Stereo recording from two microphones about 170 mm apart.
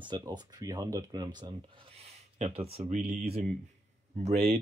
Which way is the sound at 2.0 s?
40° right (ahead or behind).